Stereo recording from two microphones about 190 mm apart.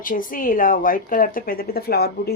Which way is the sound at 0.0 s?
45° left (ahead or behind).